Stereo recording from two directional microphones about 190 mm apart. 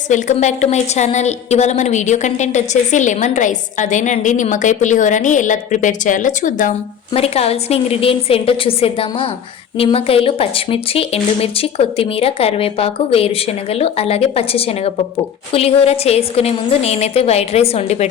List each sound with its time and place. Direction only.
0.1 s a woman's voice: 40° left (ahead or behind)